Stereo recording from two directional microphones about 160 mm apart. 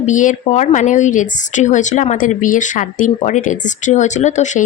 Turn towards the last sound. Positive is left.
turn(degrees=45)  # may be behind; listen again after turning